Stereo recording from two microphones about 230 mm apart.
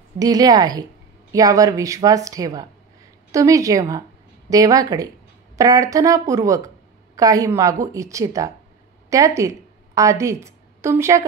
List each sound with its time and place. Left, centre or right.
0.2 s a woman's voice: centre